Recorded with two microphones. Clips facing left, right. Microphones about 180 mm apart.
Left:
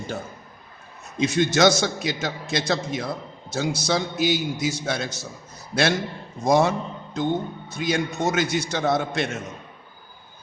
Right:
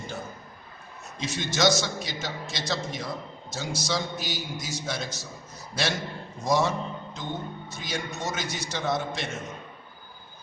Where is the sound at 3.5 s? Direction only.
60° left (ahead or behind).